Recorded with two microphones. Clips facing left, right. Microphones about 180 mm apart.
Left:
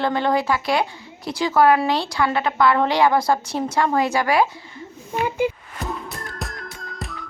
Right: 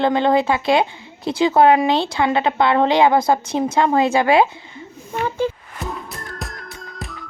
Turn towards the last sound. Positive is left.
turn(degrees=0)  # may be behind; listen again after turning